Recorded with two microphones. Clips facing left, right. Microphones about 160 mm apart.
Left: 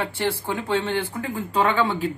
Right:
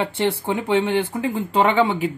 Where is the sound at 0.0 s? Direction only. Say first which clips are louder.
Right 4 dB; 20° right (ahead or behind).